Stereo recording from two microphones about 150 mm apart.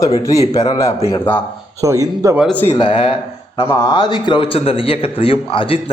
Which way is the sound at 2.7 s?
35° left (ahead or behind).